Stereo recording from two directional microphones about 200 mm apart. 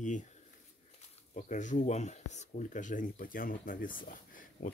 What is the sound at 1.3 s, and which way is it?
Speech, 40° left (ahead or behind).